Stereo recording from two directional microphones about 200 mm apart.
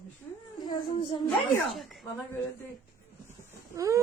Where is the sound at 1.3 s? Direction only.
Centre (ahead or behind).